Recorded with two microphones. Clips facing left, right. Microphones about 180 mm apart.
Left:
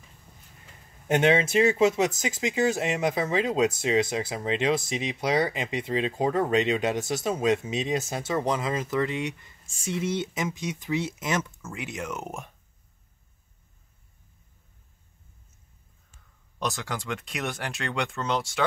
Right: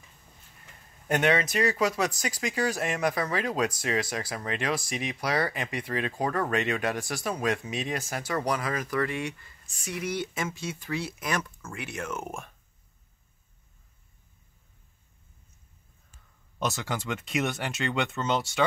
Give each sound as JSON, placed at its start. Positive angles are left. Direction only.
{"t": 1.0, "sound": "speech", "side_deg": 25}
{"t": 16.5, "sound": "speech", "side_deg": 0}